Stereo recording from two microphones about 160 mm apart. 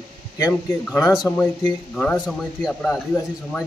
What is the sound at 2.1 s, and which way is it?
Speech, centre (ahead or behind).